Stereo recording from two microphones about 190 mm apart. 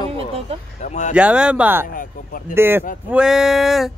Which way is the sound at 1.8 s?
50° left (ahead or behind).